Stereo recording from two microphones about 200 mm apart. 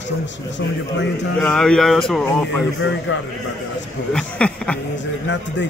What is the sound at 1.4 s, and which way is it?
Speech, 5° left (ahead or behind).